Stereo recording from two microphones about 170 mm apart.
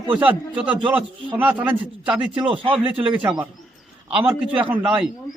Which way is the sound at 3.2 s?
10° right (ahead or behind).